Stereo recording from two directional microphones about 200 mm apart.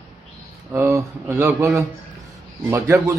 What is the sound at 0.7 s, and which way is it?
Speech, 15° right (ahead or behind).